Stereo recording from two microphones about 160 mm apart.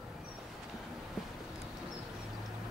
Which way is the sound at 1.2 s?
Centre (ahead or behind).